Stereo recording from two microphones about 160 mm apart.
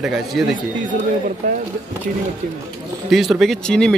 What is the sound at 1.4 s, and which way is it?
Speech, 45° right (ahead or behind).